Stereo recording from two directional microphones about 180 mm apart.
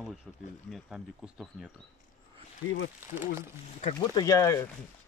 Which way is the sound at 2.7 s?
90° left.